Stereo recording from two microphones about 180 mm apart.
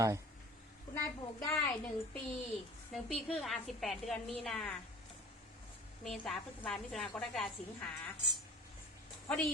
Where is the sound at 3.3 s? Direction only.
Centre (ahead or behind).